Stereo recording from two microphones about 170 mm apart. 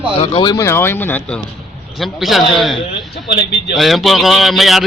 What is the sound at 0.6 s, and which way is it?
Speech, 15° left (ahead or behind).